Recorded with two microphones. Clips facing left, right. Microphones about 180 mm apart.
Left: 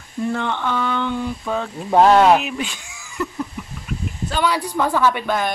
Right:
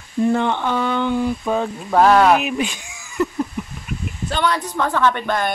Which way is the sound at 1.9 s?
20° left (ahead or behind).